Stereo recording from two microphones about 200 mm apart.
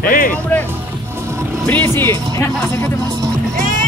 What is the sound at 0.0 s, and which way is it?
Speech, 45° left (ahead or behind).